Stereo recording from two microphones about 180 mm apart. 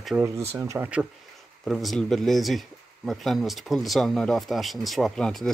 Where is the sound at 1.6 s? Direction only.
Centre (ahead or behind).